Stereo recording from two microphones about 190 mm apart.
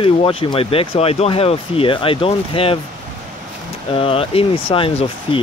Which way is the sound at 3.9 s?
30° left (ahead or behind).